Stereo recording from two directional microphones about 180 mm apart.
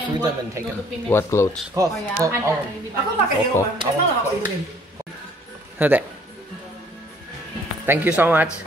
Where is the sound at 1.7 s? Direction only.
20° right (ahead or behind).